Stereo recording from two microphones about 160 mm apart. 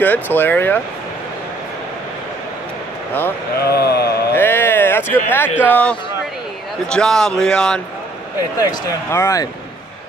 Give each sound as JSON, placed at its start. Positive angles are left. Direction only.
{"t": 0.0, "sound": "speech", "side_deg": 10}
{"t": 3.1, "sound": "speech", "side_deg": 15}
{"t": 3.7, "sound": "mantra", "side_deg": 80}
{"t": 4.4, "sound": "a sound", "side_deg": 15}
{"t": 5.3, "sound": "a man's voice", "side_deg": 10}
{"t": 8.5, "sound": "speech", "side_deg": 20}